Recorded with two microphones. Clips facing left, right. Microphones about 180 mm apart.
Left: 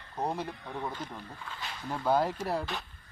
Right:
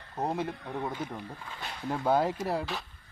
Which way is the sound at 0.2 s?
20° right (ahead or behind).